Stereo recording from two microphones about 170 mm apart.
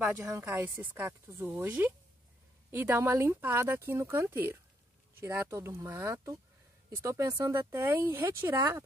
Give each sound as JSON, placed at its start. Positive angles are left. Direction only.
{"t": 0.0, "sound": "speech", "side_deg": -15}